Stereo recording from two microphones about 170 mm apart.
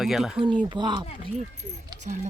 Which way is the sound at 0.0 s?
Centre (ahead or behind).